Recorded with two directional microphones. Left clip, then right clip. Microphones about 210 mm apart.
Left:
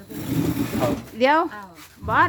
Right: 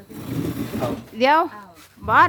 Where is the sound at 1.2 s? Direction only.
25° right (ahead or behind).